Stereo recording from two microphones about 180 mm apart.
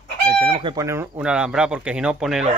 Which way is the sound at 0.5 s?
30° right (ahead or behind).